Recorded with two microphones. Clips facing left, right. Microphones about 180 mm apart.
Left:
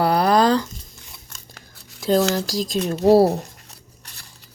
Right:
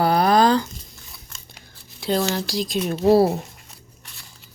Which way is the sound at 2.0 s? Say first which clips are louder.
Left 4 dB; 45° left (ahead or behind).